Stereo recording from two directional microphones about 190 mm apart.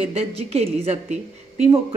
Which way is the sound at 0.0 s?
30° right (ahead or behind).